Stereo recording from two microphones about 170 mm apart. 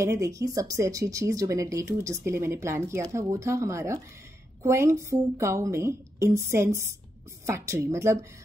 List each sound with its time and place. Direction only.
0.0 s speech: 20° right (ahead or behind)